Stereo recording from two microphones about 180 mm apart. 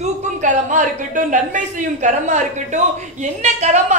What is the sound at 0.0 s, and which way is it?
A man's voice, 40° right (ahead or behind).